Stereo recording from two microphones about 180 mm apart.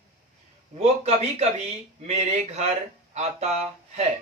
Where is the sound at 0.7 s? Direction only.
35° right (ahead or behind).